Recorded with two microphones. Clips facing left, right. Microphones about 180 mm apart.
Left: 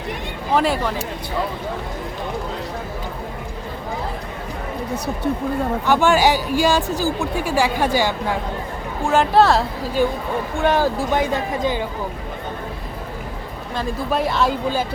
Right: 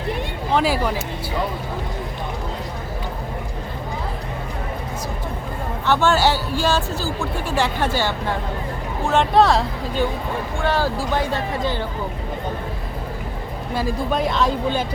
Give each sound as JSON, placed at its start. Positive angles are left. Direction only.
{"t": 0.5, "sound": "speech", "side_deg": 0}
{"t": 5.8, "sound": "speech", "side_deg": 15}
{"t": 10.6, "sound": "speech", "side_deg": 20}
{"t": 13.7, "sound": "speech", "side_deg": 0}